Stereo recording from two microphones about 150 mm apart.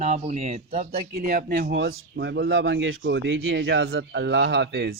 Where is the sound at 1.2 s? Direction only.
65° right (ahead or behind); by 2.0 s 85° right.